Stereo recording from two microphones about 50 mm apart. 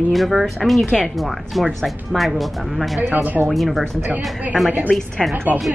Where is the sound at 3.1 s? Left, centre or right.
Right.